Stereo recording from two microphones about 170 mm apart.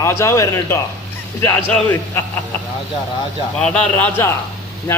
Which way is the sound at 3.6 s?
5° left (ahead or behind).